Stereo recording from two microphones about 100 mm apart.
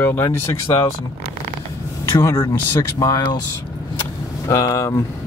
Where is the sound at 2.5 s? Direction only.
35° left (ahead or behind).